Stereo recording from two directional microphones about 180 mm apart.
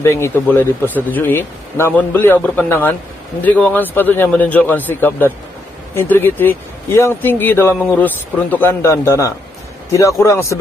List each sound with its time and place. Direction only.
0.0 s speech: 15° left (ahead or behind)